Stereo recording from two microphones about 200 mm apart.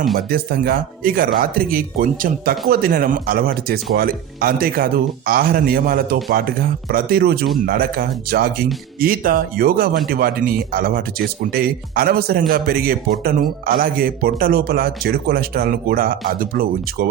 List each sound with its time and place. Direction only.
0.2 s speech: 50° right (ahead or behind)